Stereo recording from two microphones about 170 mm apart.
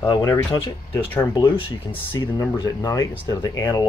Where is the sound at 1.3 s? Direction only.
25° left (ahead or behind).